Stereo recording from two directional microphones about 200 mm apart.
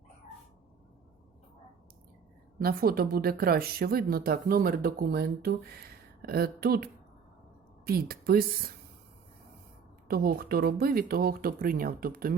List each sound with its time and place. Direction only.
2.6 s a woman's voice: 50° right (ahead or behind)
10.1 s a woman's voice: 50° right (ahead or behind)